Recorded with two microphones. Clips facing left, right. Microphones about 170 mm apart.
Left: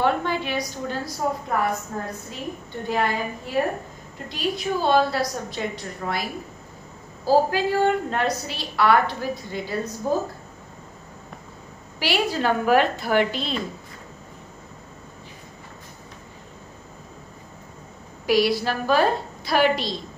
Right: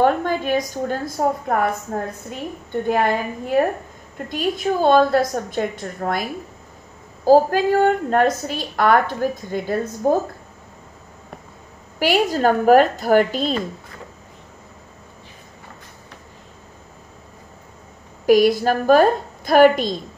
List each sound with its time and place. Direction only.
0.0 s a woman's voice: 45° right (ahead or behind)
2.9 s a woman's voice: 50° right (ahead or behind)
7.2 s a woman's voice: 50° right (ahead or behind)
12.0 s a woman's voice: 45° right (ahead or behind)
18.2 s a woman's voice: 50° right (ahead or behind)